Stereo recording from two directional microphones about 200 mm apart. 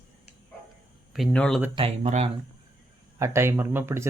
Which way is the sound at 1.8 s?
30° right (ahead or behind).